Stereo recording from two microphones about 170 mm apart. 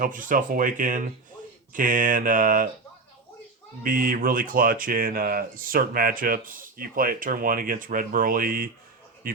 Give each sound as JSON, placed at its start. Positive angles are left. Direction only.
{"t": 0.0, "sound": "speech", "side_deg": -50}
{"t": 3.8, "sound": "speech", "side_deg": -55}